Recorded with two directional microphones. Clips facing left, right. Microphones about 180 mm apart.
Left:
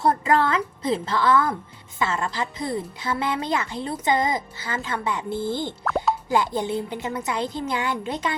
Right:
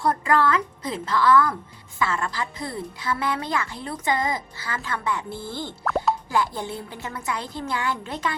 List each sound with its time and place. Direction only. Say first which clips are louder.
0.0 s a woman's voice: left 1 dB; 25° left (ahead or behind)
5.8 s plop: right 2 dB; centre (ahead or behind)
6.2 s a woman's voice: left 3 dB; 20° left (ahead or behind)